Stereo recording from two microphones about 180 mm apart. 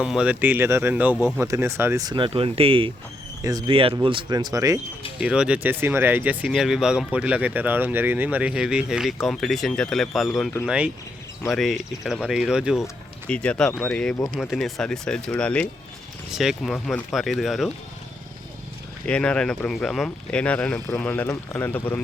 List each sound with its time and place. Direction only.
0.0 s speech: 5° right (ahead or behind)
5.2 s speech: 5° right (ahead or behind)
12.8 s speech: 5° left (ahead or behind)
19.0 s speech: 5° left (ahead or behind)